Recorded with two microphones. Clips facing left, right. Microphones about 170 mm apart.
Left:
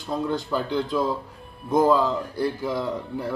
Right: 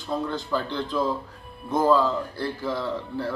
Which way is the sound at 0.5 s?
15° left (ahead or behind).